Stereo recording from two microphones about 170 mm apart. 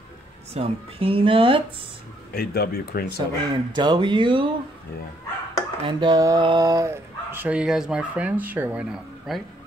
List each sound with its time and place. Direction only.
0.5 s speech: 35° right (ahead or behind)
2.3 s speech: 65° left (ahead or behind)
3.2 s speech: 25° right (ahead or behind)
5.9 s speech: 25° right (ahead or behind); by 9.4 s centre (ahead or behind)